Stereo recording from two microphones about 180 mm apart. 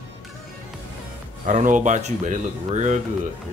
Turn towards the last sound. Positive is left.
turn(degrees=-40)  # may be behind; listen again after turning